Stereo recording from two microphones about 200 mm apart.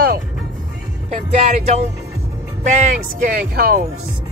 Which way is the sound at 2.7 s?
40° right (ahead or behind).